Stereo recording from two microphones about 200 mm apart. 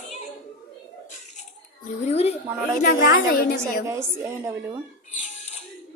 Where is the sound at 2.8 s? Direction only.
45° left (ahead or behind).